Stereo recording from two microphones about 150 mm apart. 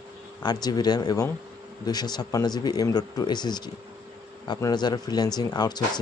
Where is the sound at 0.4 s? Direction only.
25° left (ahead or behind).